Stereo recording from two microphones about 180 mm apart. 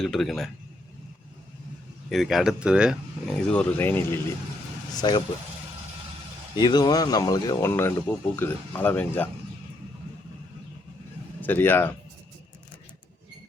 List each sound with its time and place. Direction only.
0.0 s speech: centre (ahead or behind)
2.0 s speech: centre (ahead or behind)
3.3 s speech: 5° left (ahead or behind)
4.9 s speech: 25° left (ahead or behind)
6.6 s speech: 25° left (ahead or behind)
11.3 s a man's voice: 10° left (ahead or behind)